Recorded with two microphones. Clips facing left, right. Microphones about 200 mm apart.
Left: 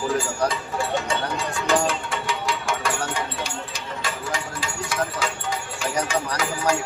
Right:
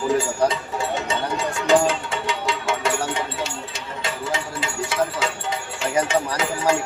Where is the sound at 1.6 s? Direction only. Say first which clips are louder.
Right 5 dB; 25° right (ahead or behind).